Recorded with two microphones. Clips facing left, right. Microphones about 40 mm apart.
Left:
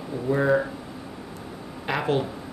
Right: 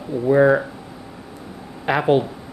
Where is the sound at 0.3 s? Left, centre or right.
Right.